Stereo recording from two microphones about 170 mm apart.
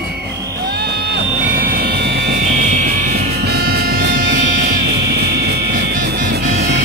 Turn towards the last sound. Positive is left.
turn(degrees=-50)  # may be behind; listen again after turning